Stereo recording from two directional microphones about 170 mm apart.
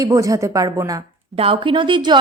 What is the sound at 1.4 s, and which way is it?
Speech, 30° right (ahead or behind).